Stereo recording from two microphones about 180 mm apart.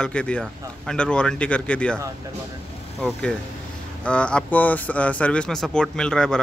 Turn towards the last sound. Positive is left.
turn(degrees=5)  # may be behind; listen again after turning